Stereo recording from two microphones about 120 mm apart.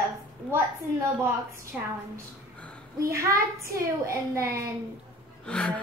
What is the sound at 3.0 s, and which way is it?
A child's voice, 25° right (ahead or behind).